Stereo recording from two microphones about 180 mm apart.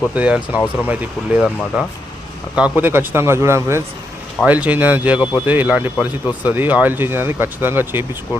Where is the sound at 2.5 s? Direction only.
10° right (ahead or behind).